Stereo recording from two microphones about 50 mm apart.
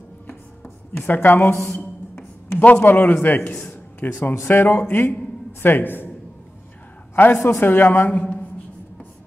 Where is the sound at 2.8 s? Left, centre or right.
Left.